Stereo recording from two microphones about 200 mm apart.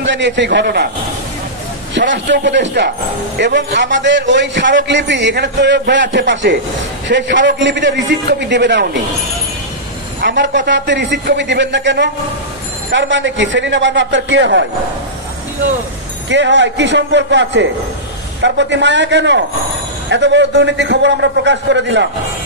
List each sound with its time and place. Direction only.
0.0 s a man's voice: 65° right (ahead or behind)
2.0 s a man's voice: 65° right (ahead or behind)
10.2 s a man's voice: 60° right (ahead or behind)
16.3 s a man's voice: 65° right (ahead or behind)